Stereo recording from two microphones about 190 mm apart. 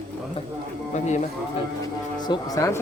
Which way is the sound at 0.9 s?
40° left (ahead or behind).